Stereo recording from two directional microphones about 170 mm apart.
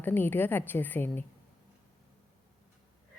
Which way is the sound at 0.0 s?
10° left (ahead or behind).